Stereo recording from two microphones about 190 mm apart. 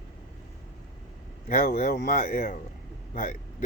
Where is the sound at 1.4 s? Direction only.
45° left (ahead or behind).